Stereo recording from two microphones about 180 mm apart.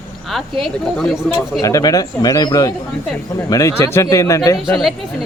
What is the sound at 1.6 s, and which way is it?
Speech, 20° left (ahead or behind).